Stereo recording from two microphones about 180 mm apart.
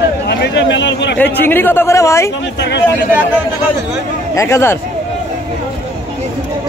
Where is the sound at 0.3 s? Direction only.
80° left.